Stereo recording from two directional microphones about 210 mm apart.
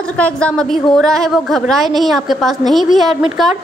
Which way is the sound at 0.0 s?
5° left (ahead or behind).